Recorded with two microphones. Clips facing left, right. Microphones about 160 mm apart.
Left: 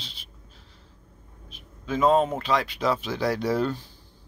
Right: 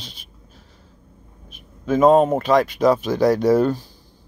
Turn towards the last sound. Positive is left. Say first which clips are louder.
# right 9 dB
turn(degrees=-45)  # may be behind; listen again after turning